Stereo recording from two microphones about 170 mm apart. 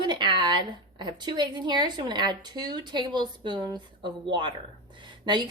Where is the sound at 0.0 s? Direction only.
25° right (ahead or behind).